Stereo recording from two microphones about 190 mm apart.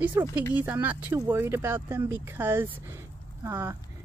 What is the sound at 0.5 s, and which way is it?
Speech, 10° right (ahead or behind).